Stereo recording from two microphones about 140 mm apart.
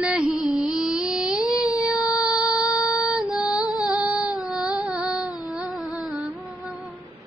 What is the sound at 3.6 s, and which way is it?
Music, 25° left (ahead or behind).